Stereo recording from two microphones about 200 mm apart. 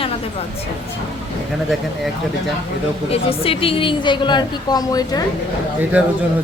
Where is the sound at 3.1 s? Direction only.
30° left (ahead or behind).